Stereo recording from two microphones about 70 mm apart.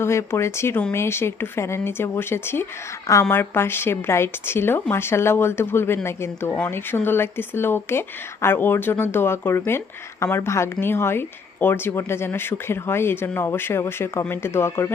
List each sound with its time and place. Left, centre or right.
0.0 s speech: left
3.1 s a woman's voice: left
3.3 s speech: left